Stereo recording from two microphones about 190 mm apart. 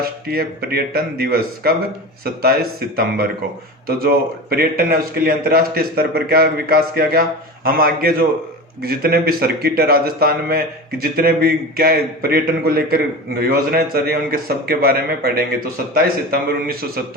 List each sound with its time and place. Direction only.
0.0 s a man's voice: 55° right (ahead or behind)